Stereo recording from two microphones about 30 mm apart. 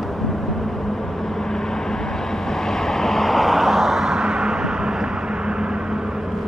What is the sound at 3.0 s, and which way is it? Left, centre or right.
Vehicle, centre.